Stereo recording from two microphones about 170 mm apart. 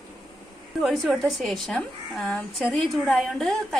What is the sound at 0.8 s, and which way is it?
A woman's voice, 5° right (ahead or behind).